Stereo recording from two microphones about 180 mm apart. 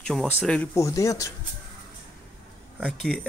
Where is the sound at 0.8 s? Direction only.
20° left (ahead or behind).